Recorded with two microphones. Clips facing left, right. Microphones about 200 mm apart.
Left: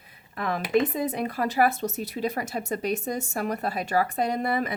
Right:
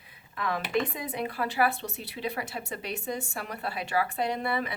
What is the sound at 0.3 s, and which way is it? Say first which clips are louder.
A woman's voice: left 5 dB; 45° left (ahead or behind).